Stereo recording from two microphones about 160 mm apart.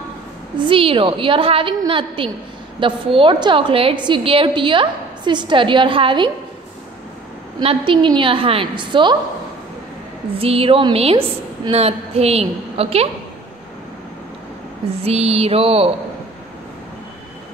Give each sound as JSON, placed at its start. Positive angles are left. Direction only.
{"t": 0.6, "sound": "a woman's voice", "side_deg": -35}
{"t": 7.6, "sound": "a woman's voice", "side_deg": -30}
{"t": 10.3, "sound": "a woman's voice", "side_deg": -35}
{"t": 15.0, "sound": "a woman's voice", "side_deg": -40}